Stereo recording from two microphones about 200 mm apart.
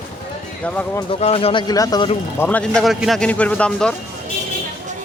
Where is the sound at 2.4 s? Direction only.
10° left (ahead or behind).